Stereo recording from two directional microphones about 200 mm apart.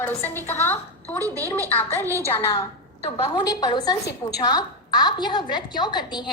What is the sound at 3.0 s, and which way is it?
A woman's voice, 25° left (ahead or behind).